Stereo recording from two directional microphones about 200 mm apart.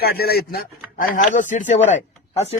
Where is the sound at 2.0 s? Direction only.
30° left (ahead or behind).